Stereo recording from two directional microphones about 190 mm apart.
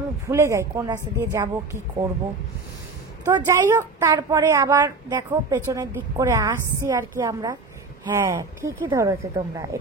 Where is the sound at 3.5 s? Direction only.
15° right (ahead or behind).